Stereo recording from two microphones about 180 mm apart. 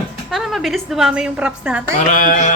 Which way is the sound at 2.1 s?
45° left (ahead or behind).